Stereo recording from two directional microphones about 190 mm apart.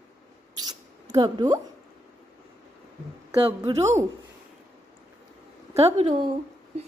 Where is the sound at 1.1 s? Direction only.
20° right (ahead or behind).